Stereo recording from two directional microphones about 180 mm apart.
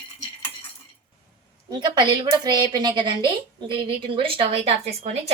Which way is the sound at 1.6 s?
25° right (ahead or behind).